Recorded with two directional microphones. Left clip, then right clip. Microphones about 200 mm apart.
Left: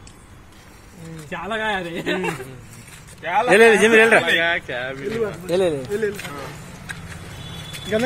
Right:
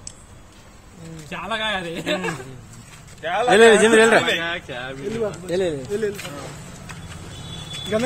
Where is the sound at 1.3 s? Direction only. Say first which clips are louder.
Left 1 dB; 15° right (ahead or behind).